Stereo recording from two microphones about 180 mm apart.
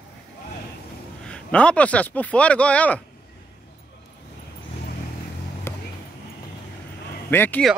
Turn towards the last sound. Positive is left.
turn(degrees=10)  # may be behind; listen again after turning